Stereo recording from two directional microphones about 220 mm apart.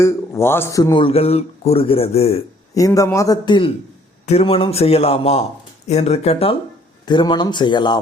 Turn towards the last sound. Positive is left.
turn(degrees=20)  # may be behind; listen again after turning